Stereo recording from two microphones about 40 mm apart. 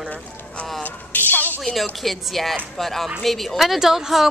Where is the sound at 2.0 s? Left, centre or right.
Centre.